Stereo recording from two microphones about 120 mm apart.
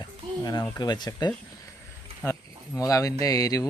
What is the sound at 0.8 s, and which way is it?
Speech, 35° left (ahead or behind).